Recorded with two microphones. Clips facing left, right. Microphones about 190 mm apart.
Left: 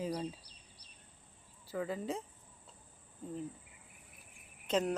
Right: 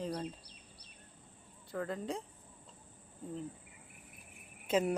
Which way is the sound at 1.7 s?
5° left (ahead or behind).